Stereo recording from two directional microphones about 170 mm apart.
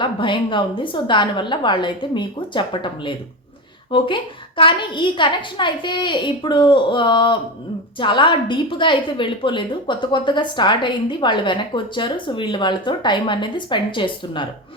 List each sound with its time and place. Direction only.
0.0 s a woman's voice: 30° left (ahead or behind)